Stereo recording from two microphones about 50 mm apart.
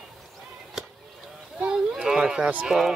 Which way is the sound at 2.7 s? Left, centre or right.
Centre.